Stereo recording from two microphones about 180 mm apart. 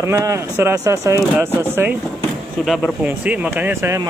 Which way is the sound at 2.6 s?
Centre (ahead or behind).